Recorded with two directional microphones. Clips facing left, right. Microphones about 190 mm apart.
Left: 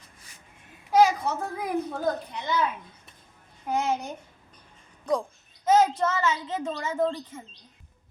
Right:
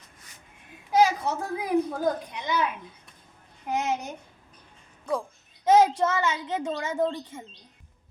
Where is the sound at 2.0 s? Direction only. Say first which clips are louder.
Right 1 dB; 10° right (ahead or behind).